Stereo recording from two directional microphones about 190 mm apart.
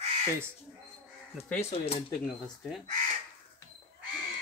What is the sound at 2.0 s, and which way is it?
Speech, 20° left (ahead or behind).